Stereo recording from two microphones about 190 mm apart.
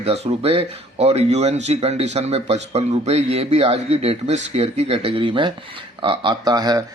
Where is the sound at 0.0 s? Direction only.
30° right (ahead or behind).